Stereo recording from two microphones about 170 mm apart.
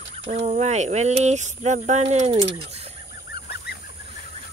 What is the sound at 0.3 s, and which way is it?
Speech, 40° right (ahead or behind).